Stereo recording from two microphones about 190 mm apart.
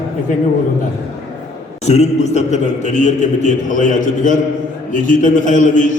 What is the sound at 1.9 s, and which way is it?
A man's voice, 35° left (ahead or behind).